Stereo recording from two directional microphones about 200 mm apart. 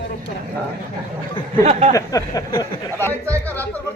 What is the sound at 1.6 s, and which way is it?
Speech, 30° right (ahead or behind).